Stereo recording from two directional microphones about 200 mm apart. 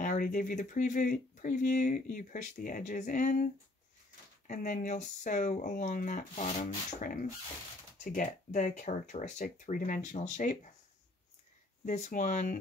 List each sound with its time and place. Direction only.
0.0 s speech: 40° left (ahead or behind)
11.8 s speech: 35° left (ahead or behind)